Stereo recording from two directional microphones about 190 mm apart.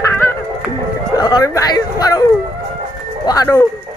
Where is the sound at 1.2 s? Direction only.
20° left (ahead or behind).